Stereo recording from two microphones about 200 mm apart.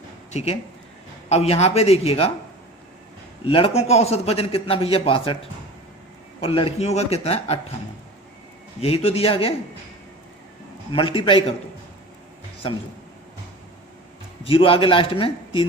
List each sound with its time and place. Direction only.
0.3 s a man's voice: 35° left (ahead or behind)
3.4 s a man's voice: 30° left (ahead or behind)
8.8 s a man's voice: 30° left (ahead or behind)
10.9 s a man's voice: 25° left (ahead or behind)
14.4 s a man's voice: 25° left (ahead or behind)